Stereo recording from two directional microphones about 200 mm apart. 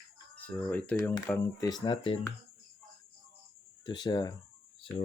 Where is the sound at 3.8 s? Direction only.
20° left (ahead or behind).